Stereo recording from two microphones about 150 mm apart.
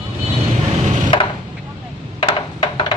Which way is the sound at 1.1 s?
35° left (ahead or behind).